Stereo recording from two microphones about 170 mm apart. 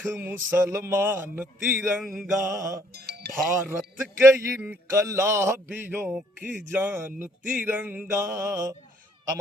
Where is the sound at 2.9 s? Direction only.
70° right (ahead or behind).